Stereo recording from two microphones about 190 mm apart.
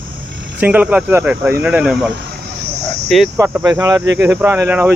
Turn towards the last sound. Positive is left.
turn(degrees=-10)  # may be behind; listen again after turning